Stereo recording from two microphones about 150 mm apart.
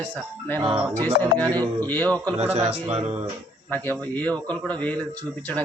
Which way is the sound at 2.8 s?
45° right (ahead or behind).